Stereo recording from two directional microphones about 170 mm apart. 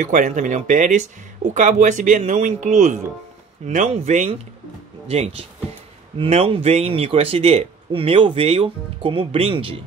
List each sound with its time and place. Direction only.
0.0 s speech: 45° right (ahead or behind); by 9.8 s 30° right (ahead or behind)